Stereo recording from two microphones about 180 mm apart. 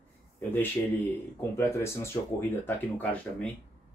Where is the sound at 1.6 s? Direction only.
15° left (ahead or behind).